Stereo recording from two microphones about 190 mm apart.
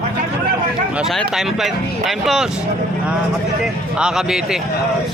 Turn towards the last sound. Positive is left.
turn(degrees=0)  # may be behind; listen again after turning